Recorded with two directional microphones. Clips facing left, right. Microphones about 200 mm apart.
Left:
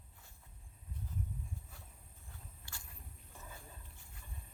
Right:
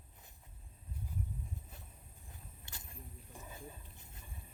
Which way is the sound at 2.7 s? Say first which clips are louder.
Right 6 dB; 20° right (ahead or behind).